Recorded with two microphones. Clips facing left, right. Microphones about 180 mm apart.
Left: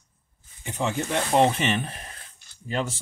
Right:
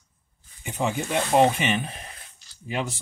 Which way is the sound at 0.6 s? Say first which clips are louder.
Right 1 dB; 15° right (ahead or behind).